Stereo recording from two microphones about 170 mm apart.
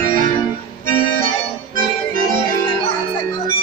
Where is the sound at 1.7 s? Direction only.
55° right (ahead or behind).